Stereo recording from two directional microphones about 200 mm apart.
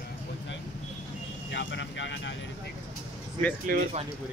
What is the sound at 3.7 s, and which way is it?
Speech, 50° right (ahead or behind).